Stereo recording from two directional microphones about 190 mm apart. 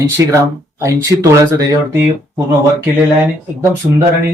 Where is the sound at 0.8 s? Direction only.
15° right (ahead or behind).